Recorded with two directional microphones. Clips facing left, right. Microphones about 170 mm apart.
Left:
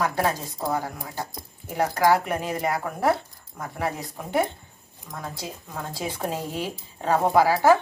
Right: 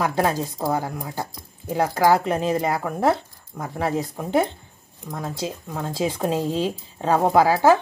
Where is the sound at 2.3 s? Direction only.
25° right (ahead or behind).